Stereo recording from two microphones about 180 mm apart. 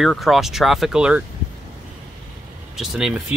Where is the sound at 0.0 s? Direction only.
Centre (ahead or behind).